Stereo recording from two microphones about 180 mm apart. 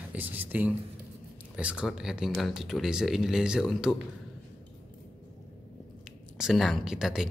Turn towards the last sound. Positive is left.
turn(degrees=-5)  # may be behind; listen again after turning